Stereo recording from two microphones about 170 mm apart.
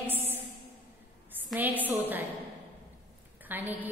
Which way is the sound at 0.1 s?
10° right (ahead or behind).